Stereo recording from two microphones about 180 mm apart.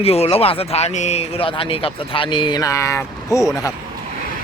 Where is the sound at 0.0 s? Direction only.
35° left (ahead or behind); by 3.4 s 15° left (ahead or behind).